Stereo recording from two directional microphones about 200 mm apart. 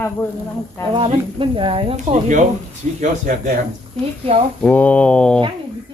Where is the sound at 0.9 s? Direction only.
25° right (ahead or behind).